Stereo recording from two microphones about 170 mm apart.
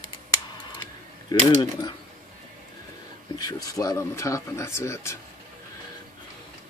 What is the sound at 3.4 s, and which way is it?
Speech, 20° left (ahead or behind).